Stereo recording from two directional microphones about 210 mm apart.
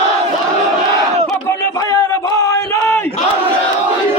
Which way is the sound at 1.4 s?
15° left (ahead or behind).